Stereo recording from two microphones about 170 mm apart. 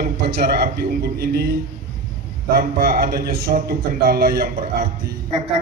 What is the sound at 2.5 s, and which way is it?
A man's voice, 60° right (ahead or behind).